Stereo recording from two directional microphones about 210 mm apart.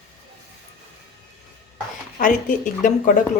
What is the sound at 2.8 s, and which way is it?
Speech, 40° left (ahead or behind).